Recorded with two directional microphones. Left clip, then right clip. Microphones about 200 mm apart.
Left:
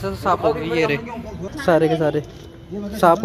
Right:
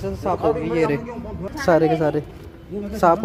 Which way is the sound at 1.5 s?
5° right (ahead or behind).